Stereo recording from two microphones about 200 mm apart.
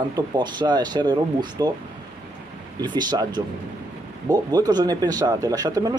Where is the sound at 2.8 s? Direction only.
20° right (ahead or behind).